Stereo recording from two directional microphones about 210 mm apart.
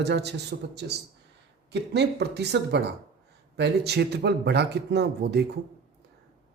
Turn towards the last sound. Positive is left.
turn(degrees=-50)  # may be behind; listen again after turning